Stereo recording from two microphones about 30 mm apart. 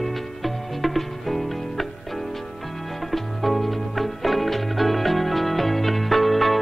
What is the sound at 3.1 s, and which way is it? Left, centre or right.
Music, centre.